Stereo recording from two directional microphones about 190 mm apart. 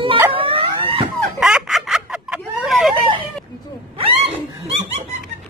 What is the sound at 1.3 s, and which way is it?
Chicken, centre (ahead or behind).